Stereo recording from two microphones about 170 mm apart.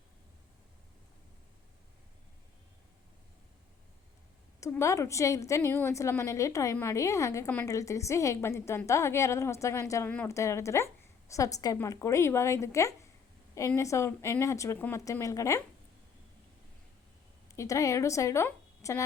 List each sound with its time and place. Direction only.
4.6 s a woman's voice: 15° left (ahead or behind)
17.5 s a woman's voice: 20° left (ahead or behind)